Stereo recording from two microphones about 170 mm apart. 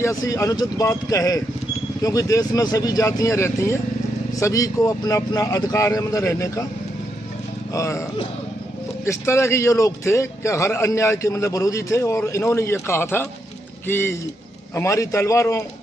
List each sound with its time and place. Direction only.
0.0 s speech: 20° left (ahead or behind)
7.7 s a man's voice: 15° left (ahead or behind)
9.0 s a man's voice: 15° left (ahead or behind)